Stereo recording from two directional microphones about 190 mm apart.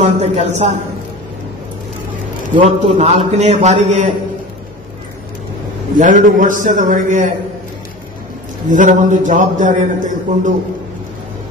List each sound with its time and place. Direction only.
0.0 s a man's voice: 35° right (ahead or behind)
2.5 s a man's voice: 35° right (ahead or behind)
5.9 s a man's voice: 45° right (ahead or behind)
8.6 s a man's voice: 45° right (ahead or behind)